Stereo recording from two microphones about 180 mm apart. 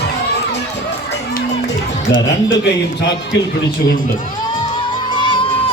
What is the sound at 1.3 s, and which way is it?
Music, 70° left (ahead or behind).